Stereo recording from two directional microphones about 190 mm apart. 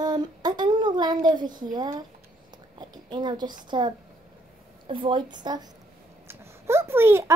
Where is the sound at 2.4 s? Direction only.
25° right (ahead or behind).